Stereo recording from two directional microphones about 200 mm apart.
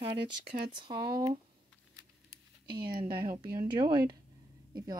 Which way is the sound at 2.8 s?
20° right (ahead or behind).